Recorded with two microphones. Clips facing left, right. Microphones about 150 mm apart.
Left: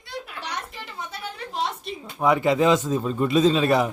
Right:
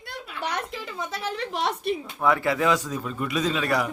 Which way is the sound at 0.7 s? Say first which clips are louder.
Right 4 dB; 90° right.